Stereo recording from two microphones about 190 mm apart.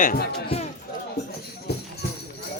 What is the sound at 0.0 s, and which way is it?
Speech, 50° left (ahead or behind).